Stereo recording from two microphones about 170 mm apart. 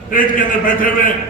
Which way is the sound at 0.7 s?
55° left (ahead or behind).